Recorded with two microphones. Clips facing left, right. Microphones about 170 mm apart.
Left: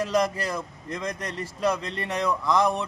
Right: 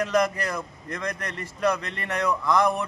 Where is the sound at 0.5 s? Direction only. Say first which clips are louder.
Left 1 dB; 25° left (ahead or behind).